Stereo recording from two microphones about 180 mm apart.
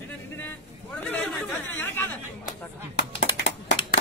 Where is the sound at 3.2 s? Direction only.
90° left.